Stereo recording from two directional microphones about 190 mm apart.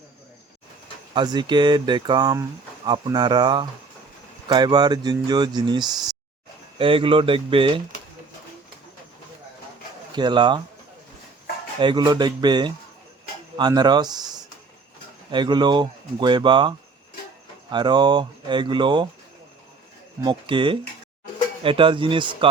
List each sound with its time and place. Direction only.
1.1 s speech: 20° right (ahead or behind)
10.1 s speech: 25° right (ahead or behind)
11.8 s speech: 25° right (ahead or behind)
15.3 s speech: 25° right (ahead or behind)
20.2 s speech: 25° right (ahead or behind)